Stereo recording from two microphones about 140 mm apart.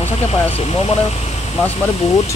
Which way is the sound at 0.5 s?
45° left (ahead or behind).